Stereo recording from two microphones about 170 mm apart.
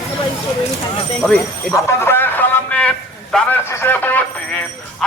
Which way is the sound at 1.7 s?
15° left (ahead or behind).